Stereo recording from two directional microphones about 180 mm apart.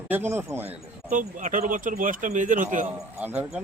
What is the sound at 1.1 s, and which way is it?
Speech, 45° right (ahead or behind).